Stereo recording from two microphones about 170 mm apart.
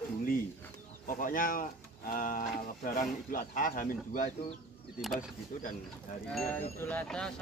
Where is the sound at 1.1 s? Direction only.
55° left (ahead or behind).